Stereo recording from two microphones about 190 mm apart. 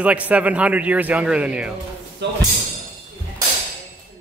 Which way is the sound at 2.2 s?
65° right (ahead or behind).